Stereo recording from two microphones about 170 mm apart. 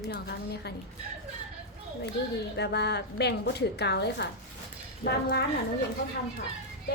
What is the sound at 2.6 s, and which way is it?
A woman's voice, 80° left.